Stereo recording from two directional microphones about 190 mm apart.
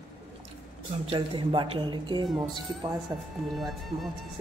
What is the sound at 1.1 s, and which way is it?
Speech, 25° right (ahead or behind).